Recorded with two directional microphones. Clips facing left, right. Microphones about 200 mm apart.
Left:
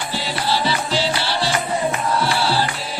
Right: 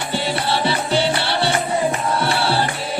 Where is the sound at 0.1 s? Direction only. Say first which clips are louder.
Right 2 dB; 55° right (ahead or behind).